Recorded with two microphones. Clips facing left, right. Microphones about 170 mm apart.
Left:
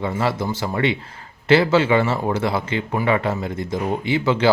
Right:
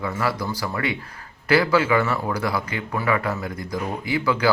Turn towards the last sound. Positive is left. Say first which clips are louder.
# left 3 dB
turn(degrees=25)  # may be behind; listen again after turning